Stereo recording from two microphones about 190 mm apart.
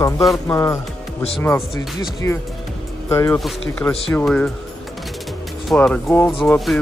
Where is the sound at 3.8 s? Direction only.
5° left (ahead or behind).